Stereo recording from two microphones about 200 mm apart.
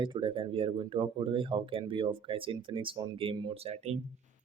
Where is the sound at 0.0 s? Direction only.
25° right (ahead or behind).